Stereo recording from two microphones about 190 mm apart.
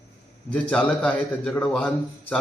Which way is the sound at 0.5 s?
5° left (ahead or behind).